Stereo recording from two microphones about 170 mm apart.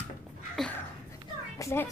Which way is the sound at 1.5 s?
15° left (ahead or behind).